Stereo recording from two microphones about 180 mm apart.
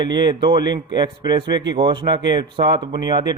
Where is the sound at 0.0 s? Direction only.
25° right (ahead or behind).